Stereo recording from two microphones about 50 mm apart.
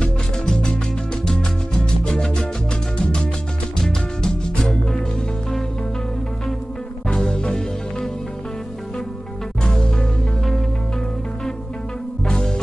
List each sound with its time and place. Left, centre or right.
0.0 s music: centre
7.2 s music: centre
9.6 s music: centre
12.3 s music: centre